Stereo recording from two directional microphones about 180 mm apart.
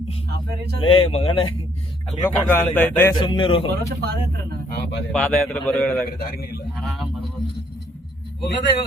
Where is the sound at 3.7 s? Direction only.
60° right (ahead or behind).